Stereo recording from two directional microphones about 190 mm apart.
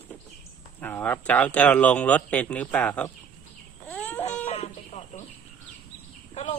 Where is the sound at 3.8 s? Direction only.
10° left (ahead or behind).